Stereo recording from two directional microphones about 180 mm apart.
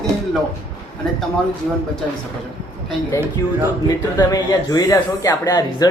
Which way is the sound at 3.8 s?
20° left (ahead or behind).